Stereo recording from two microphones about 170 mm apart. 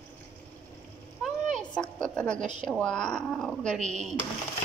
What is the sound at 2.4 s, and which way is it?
Speech, 45° right (ahead or behind).